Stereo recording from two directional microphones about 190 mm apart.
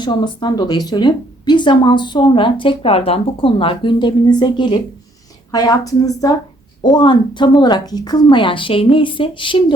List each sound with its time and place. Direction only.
0.0 s a woman's voice: 25° left (ahead or behind)